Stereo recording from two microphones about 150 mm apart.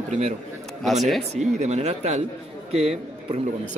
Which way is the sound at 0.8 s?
Centre (ahead or behind).